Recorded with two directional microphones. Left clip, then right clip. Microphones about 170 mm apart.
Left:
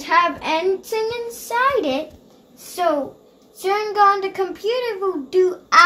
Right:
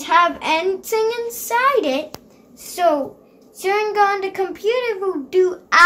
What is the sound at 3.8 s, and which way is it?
Child singing, 15° right (ahead or behind).